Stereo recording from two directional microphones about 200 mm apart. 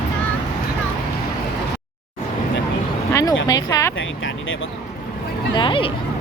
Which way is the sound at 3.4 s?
20° left (ahead or behind).